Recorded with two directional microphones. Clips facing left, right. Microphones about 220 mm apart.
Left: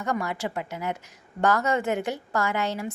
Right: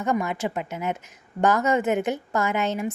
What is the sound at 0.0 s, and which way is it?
A woman's voice, 20° right (ahead or behind).